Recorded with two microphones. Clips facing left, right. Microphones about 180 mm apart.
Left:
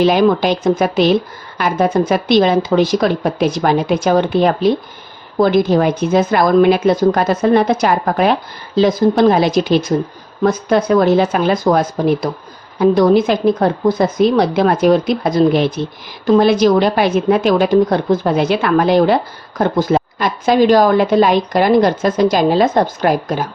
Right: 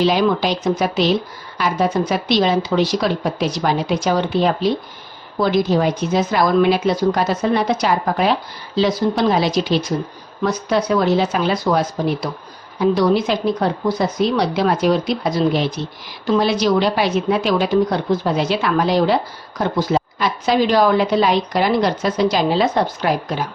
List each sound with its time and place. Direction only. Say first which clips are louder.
0.0 s a woman's voice: left 4 dB; 50° left (ahead or behind)